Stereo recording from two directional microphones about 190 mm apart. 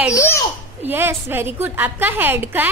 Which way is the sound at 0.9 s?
10° right (ahead or behind).